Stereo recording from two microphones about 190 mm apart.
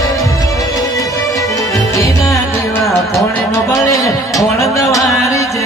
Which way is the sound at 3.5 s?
15° left (ahead or behind).